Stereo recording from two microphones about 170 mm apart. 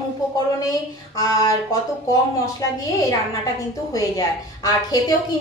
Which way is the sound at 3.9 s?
20° left (ahead or behind).